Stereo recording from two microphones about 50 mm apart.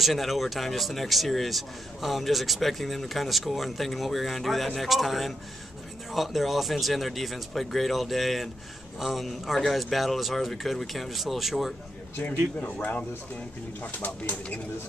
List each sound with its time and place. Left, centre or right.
0.0 s speech: centre
12.5 s speech: left